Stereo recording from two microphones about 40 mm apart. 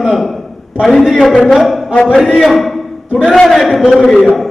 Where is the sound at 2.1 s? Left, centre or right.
Centre.